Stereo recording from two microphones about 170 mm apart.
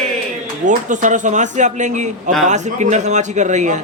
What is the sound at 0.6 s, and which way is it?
A man's voice, 50° right (ahead or behind).